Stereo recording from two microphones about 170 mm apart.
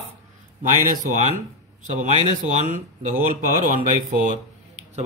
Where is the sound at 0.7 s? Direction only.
50° right (ahead or behind).